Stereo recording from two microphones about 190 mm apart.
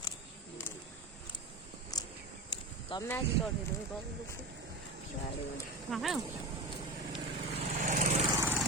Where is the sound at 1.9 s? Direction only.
20° left (ahead or behind).